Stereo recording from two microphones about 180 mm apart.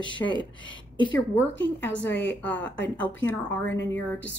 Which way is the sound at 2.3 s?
10° left (ahead or behind).